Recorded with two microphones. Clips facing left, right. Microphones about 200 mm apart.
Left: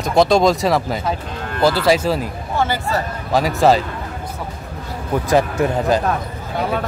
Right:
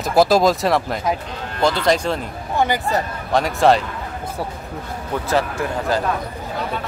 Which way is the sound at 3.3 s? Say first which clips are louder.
Left 1 dB; centre (ahead or behind).